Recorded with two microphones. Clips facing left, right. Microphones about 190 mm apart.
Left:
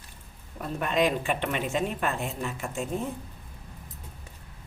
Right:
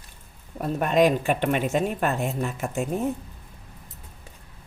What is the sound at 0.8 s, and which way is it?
Speech, 45° right (ahead or behind).